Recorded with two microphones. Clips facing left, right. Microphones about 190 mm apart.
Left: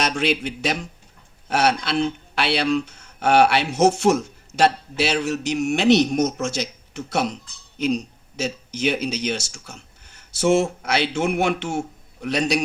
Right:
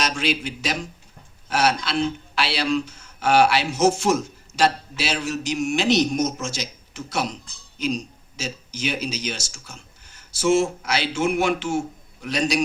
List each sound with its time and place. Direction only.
0.0 s speech: 60° left (ahead or behind)